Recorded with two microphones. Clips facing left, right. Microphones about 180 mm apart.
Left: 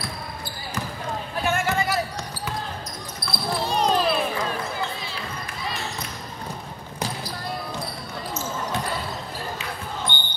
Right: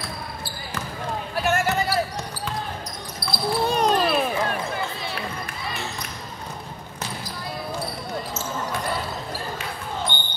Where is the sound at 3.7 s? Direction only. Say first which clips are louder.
Even; 55° right (ahead or behind).